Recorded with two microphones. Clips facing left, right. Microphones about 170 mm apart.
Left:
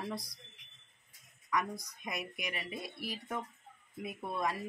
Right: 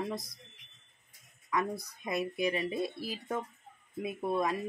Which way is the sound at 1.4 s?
30° right (ahead or behind).